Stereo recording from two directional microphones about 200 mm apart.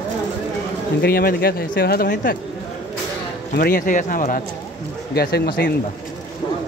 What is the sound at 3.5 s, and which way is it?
Speech, 45° left (ahead or behind).